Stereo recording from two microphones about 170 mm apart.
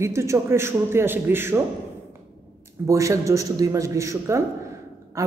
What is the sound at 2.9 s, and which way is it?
A man's voice, 20° right (ahead or behind).